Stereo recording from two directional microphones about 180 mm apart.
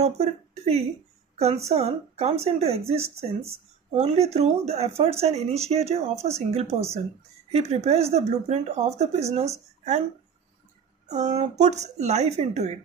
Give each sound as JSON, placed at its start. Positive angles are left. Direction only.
{"t": 0.0, "sound": "speech", "side_deg": -35}
{"t": 11.1, "sound": "speech", "side_deg": -40}